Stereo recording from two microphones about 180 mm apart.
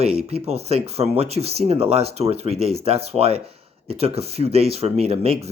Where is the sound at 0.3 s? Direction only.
35° right (ahead or behind).